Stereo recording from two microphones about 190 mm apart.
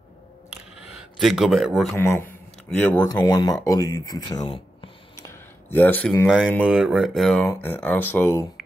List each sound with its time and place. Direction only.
1.2 s speech: centre (ahead or behind)
2.0 s speech: 15° left (ahead or behind)
3.1 s speech: 20° left (ahead or behind)
5.2 s a sound: 10° left (ahead or behind)
6.6 s speech: 5° right (ahead or behind); by 8.5 s 15° left (ahead or behind)